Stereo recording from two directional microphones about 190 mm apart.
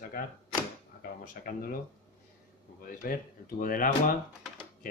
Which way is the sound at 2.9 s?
45° left (ahead or behind).